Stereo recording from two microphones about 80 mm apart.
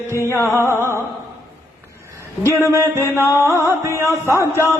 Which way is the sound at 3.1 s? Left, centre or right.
Left.